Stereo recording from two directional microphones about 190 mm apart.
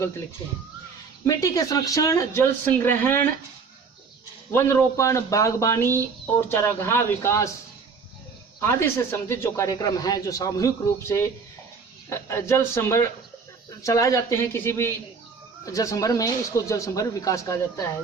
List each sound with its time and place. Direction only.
1.3 s speech: 15° left (ahead or behind)
4.5 s speech: 10° left (ahead or behind)
8.6 s speech: 15° left (ahead or behind)